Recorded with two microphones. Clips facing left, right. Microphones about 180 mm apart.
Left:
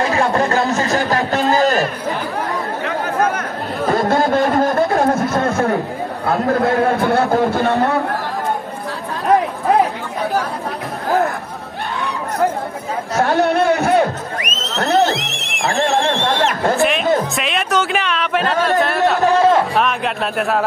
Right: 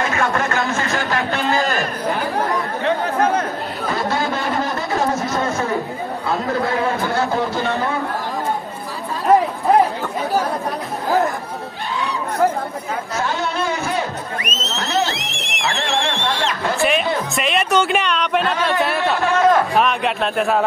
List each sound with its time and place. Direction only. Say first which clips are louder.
0.0 s speech: left 4 dB; 35° left (ahead or behind)
2.8 s chatter: even; 30° right (ahead or behind)
3.8 s a sound: left 6 dB; 50° left (ahead or behind)
6.2 s a man's voice: left 5 dB; 55° left (ahead or behind)
13.2 s a man's voice: left 9 dB; 65° left (ahead or behind)
17.4 s speech: right 1 dB; centre (ahead or behind)
18.4 s speech: left 3 dB; 45° left (ahead or behind)
19.2 s a sound: left 2 dB; 30° left (ahead or behind)
19.7 s a sound: even; centre (ahead or behind)